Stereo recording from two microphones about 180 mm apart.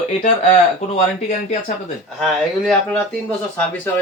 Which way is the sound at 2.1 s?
Centre (ahead or behind).